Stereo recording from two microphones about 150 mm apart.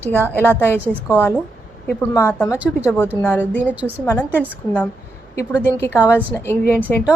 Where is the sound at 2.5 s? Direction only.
10° right (ahead or behind).